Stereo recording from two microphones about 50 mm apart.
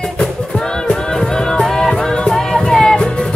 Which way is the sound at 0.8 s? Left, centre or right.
Centre.